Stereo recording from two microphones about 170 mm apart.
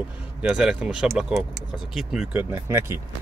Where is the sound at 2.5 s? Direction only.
15° right (ahead or behind).